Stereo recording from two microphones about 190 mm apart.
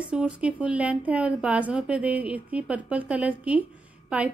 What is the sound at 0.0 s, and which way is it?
Speech, 5° right (ahead or behind).